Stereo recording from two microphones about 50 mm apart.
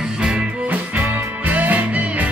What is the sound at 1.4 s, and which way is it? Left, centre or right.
Music, right.